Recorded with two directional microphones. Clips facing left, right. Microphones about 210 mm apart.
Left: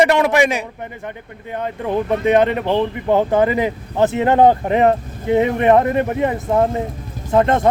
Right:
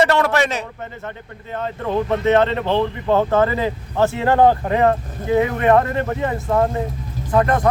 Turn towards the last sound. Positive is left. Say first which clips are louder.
# left 2 dB
turn(degrees=25)  # may be behind; listen again after turning